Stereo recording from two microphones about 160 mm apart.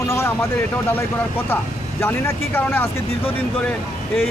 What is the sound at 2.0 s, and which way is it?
Speech, 15° left (ahead or behind).